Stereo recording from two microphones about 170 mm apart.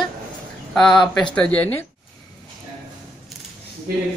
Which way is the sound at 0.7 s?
5° left (ahead or behind).